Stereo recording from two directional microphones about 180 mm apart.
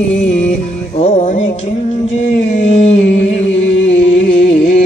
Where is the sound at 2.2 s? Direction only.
40° left (ahead or behind).